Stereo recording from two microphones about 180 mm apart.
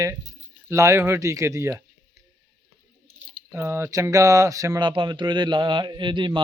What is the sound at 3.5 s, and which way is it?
A man's voice, 15° right (ahead or behind).